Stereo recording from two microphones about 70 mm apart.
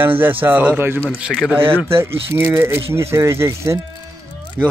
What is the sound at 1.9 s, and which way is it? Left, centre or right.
Speech, right.